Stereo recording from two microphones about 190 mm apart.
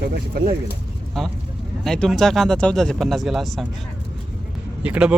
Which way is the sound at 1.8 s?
Centre (ahead or behind).